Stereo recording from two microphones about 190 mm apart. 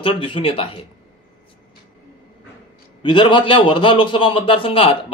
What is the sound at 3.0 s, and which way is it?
Speech, 25° left (ahead or behind).